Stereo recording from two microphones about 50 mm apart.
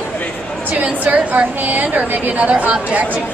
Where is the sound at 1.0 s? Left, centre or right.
Right.